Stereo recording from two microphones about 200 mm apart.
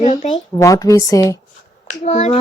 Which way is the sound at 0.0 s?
35° left (ahead or behind).